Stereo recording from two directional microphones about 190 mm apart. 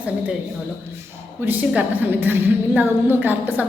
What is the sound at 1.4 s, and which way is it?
A woman's voice, 10° right (ahead or behind).